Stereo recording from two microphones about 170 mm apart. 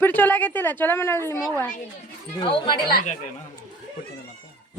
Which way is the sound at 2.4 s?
30° left (ahead or behind).